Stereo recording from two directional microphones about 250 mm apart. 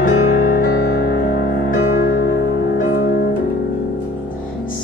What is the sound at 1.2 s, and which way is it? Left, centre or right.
Music, left.